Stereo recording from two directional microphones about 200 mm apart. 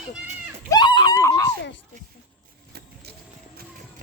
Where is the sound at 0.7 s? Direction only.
20° left (ahead or behind).